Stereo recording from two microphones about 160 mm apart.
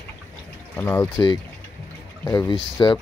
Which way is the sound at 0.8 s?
15° left (ahead or behind).